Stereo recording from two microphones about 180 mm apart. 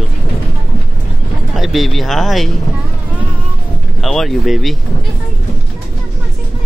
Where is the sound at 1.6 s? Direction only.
Centre (ahead or behind).